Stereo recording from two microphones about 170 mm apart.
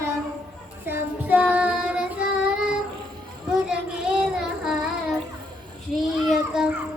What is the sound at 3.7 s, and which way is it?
Child singing, 5° right (ahead or behind).